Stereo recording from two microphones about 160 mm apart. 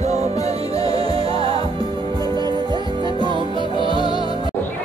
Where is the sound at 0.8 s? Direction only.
35° right (ahead or behind).